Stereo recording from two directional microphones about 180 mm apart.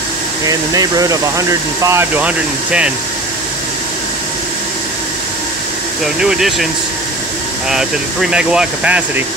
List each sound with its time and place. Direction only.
0.5 s speech: 20° right (ahead or behind)
6.1 s speech: 5° right (ahead or behind)
7.7 s speech: 5° right (ahead or behind)